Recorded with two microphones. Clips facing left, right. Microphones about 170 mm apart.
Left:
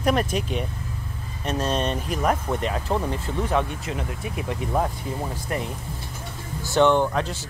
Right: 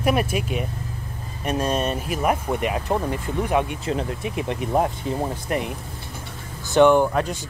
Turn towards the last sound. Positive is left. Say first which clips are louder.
# right 3 dB
turn(degrees=-10)  # may be behind; listen again after turning